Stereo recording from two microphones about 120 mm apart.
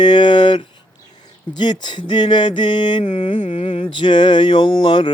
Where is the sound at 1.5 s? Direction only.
40° left (ahead or behind).